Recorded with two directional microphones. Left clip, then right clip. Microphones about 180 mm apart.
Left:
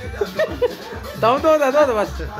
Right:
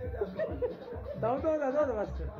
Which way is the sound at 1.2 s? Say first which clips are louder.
Left 16 dB; 25° left (ahead or behind).